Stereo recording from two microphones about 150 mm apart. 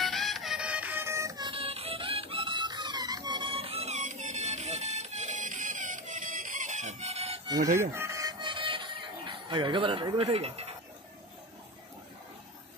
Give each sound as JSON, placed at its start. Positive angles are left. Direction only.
{"t": 0.0, "sound": "music", "side_deg": 0}
{"t": 7.4, "sound": "music", "side_deg": -25}